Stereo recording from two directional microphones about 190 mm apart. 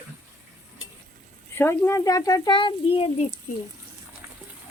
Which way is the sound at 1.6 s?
15° left (ahead or behind).